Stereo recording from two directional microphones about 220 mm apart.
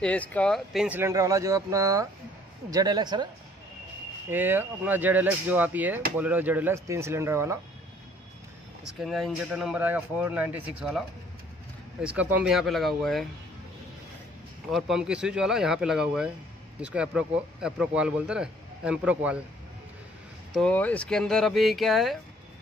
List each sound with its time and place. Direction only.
0.0 s speech: 5° left (ahead or behind); by 3.3 s 20° right (ahead or behind)
4.3 s speech: 10° right (ahead or behind)
8.8 s speech: centre (ahead or behind)
14.7 s speech: centre (ahead or behind)
20.5 s speech: 5° left (ahead or behind)